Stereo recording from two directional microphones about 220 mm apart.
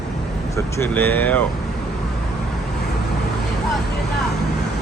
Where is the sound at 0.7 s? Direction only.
10° left (ahead or behind).